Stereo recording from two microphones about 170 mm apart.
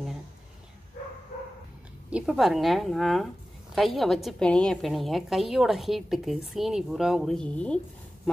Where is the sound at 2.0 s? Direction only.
5° right (ahead or behind).